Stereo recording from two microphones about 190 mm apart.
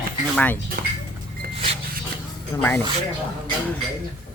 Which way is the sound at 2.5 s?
15° left (ahead or behind).